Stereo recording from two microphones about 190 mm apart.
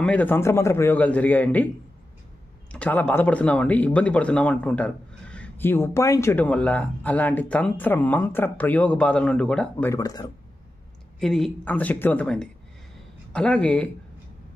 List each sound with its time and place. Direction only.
0.0 s speech: 10° left (ahead or behind)
2.7 s speech: 10° left (ahead or behind)
9.9 s speech: 20° left (ahead or behind)
11.1 s speech: centre (ahead or behind)